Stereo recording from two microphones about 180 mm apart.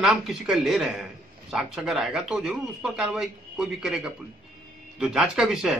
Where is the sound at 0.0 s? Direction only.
Centre (ahead or behind).